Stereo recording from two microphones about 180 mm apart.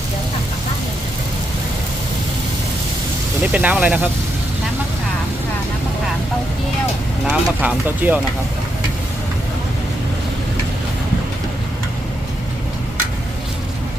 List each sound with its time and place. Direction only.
3.5 s speech: 10° right (ahead or behind)
7.3 s speech: 10° right (ahead or behind)